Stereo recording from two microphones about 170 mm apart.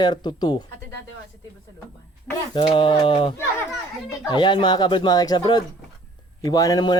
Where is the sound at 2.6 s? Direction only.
30° left (ahead or behind).